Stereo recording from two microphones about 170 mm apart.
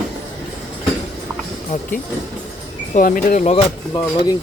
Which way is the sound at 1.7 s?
45° left (ahead or behind).